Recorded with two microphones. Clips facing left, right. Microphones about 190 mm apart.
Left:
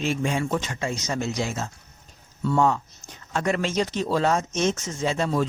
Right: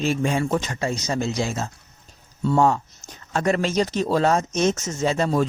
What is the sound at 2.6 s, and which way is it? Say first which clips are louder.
A man's voice: right 2 dB; 40° right (ahead or behind).